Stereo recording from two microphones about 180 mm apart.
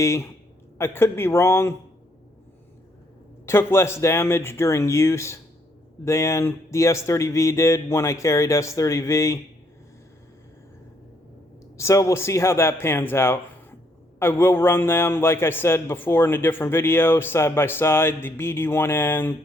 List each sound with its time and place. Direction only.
0.0 s a man's voice: 15° left (ahead or behind)
3.4 s a man's voice: 15° left (ahead or behind)
11.8 s a man's voice: 15° left (ahead or behind)